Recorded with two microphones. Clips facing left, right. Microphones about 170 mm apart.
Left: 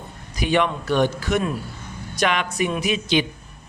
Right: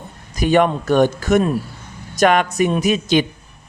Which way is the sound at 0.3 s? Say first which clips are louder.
Right 6 dB; 45° right (ahead or behind).